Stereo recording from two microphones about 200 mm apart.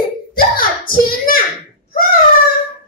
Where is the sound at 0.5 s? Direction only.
45° left (ahead or behind).